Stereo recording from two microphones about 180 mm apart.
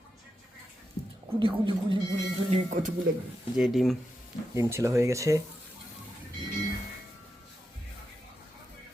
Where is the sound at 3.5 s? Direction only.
Centre (ahead or behind).